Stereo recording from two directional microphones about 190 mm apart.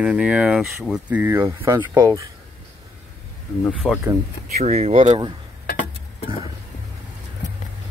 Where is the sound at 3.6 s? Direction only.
Centre (ahead or behind).